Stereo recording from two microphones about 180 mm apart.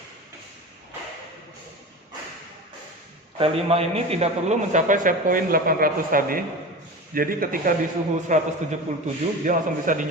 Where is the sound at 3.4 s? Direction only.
35° right (ahead or behind).